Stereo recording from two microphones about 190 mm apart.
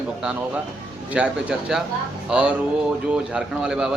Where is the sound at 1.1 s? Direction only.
5° right (ahead or behind).